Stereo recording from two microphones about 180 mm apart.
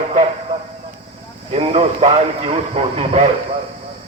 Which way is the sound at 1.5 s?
35° right (ahead or behind).